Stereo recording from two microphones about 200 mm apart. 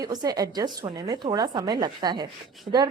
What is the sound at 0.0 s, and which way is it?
A woman's voice, 20° right (ahead or behind).